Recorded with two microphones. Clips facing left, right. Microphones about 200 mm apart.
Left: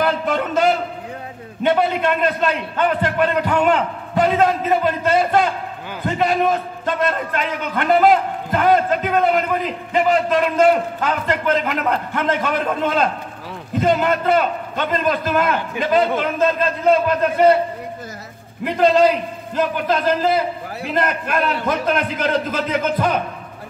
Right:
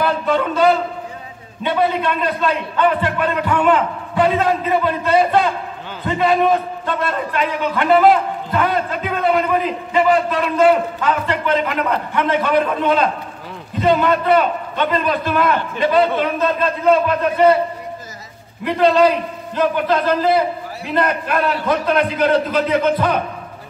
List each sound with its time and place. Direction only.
0.0 s a sound: 45° left (ahead or behind)
1.6 s a man's voice: 50° left (ahead or behind)
18.6 s a man's voice: 45° left (ahead or behind)